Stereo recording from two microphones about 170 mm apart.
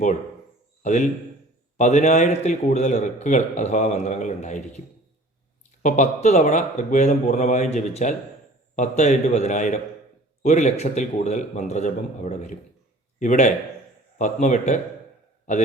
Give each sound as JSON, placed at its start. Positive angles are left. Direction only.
{"t": 0.8, "sound": "a man's voice", "side_deg": 45}
{"t": 5.8, "sound": "a man's voice", "side_deg": 45}